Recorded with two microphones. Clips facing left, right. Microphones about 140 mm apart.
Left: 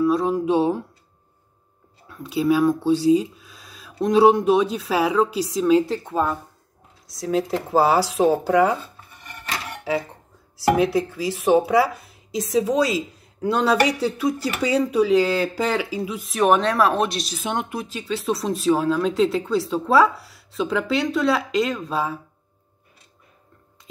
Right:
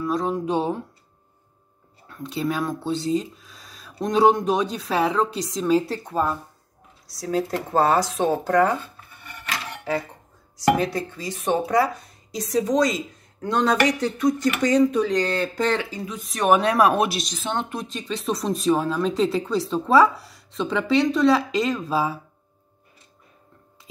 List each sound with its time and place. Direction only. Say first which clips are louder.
0.0 s speech: left 5 dB; 5° left (ahead or behind)
2.0 s speech: left 6 dB; 5° left (ahead or behind)
9.7 s a sound: left 2 dB; 5° left (ahead or behind)
10.7 s speech: left 2 dB; 5° left (ahead or behind)
16.6 s speech: right 1 dB; 10° right (ahead or behind)
17.2 s speech: left 1 dB; 10° left (ahead or behind)